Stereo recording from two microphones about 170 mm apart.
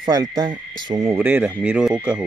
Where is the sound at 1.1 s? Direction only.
10° right (ahead or behind).